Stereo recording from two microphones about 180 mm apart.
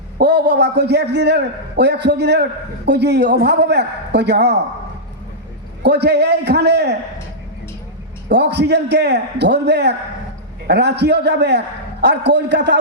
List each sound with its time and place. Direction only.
0.2 s a man's voice: 70° right (ahead or behind)
5.8 s a man's voice: 65° right (ahead or behind)
8.3 s a man's voice: 70° right (ahead or behind)